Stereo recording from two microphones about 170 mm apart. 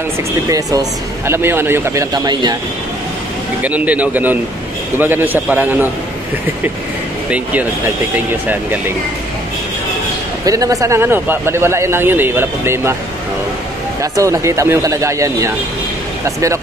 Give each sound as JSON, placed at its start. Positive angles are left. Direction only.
{"t": 0.5, "sound": "a man's voice", "side_deg": -20}
{"t": 3.6, "sound": "a man's voice", "side_deg": -10}
{"t": 7.2, "sound": "a man's voice", "side_deg": -10}
{"t": 10.4, "sound": "a man's voice", "side_deg": -20}
{"t": 14.1, "sound": "a man's voice", "side_deg": -20}